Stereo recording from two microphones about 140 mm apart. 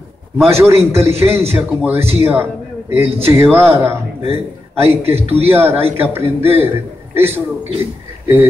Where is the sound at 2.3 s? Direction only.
15° right (ahead or behind).